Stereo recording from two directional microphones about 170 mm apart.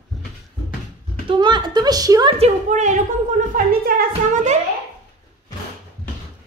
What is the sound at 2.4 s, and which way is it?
A woman's voice, 45° right (ahead or behind).